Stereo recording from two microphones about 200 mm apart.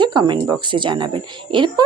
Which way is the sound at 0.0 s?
20° right (ahead or behind).